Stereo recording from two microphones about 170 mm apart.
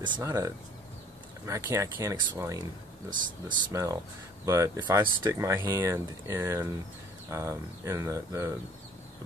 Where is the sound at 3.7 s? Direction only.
15° right (ahead or behind).